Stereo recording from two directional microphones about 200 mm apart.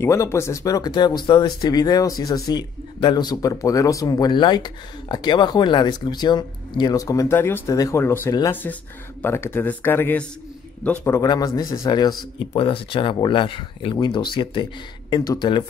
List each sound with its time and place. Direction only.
0.0 s speech: 15° left (ahead or behind)